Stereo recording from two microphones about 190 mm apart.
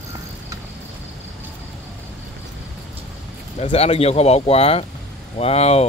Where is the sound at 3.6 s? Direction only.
30° left (ahead or behind).